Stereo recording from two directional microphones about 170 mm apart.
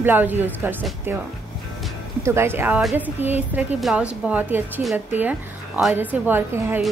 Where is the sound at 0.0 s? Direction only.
10° right (ahead or behind).